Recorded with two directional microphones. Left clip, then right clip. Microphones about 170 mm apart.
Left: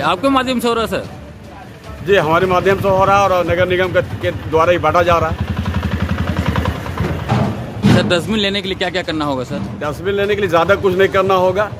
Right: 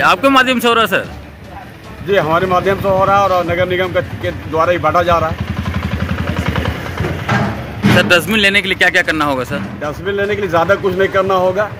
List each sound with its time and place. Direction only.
0.0 s speech: centre (ahead or behind)
2.0 s speech: 25° left (ahead or behind)
6.1 s vehicle: 45° right (ahead or behind)
8.0 s speech: centre (ahead or behind)
9.8 s speech: 20° left (ahead or behind)